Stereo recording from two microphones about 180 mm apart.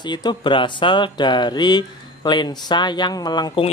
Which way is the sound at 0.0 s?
25° left (ahead or behind).